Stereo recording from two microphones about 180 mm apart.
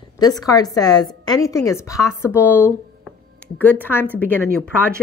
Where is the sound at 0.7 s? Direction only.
20° left (ahead or behind).